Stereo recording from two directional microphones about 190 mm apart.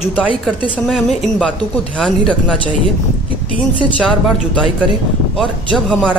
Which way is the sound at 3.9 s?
Centre (ahead or behind).